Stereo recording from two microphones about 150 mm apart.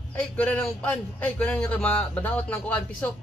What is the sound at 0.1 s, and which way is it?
A man's voice, 10° left (ahead or behind).